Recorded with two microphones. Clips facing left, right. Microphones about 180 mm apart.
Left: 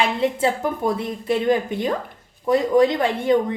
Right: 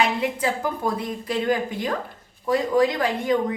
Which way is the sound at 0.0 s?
25° left (ahead or behind).